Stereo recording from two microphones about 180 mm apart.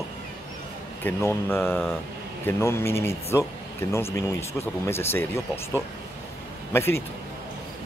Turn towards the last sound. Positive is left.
turn(degrees=15)  # may be behind; listen again after turning